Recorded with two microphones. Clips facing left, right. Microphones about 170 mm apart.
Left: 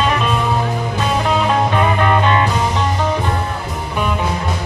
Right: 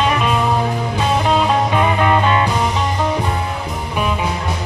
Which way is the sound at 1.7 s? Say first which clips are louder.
Even; 5° right (ahead or behind).